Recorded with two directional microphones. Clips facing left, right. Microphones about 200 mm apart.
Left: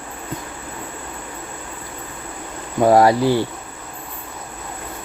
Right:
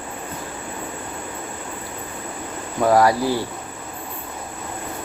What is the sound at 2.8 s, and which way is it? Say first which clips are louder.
Speech: left 3 dB; 25° left (ahead or behind).